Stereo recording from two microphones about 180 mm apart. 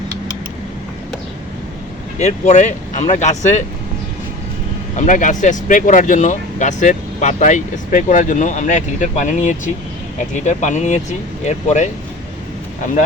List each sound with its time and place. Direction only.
2.1 s speech: 40° left (ahead or behind)
4.9 s speech: 45° left (ahead or behind)